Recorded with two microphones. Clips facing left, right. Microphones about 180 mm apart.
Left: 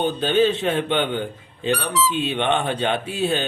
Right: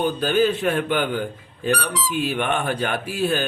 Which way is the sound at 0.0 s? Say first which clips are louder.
Left 1 dB; 25° left (ahead or behind).